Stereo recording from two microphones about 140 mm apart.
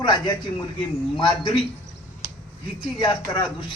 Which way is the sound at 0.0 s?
35° left (ahead or behind).